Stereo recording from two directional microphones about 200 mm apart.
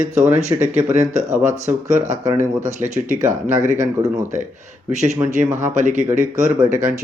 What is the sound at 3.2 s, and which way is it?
Speech, 40° right (ahead or behind).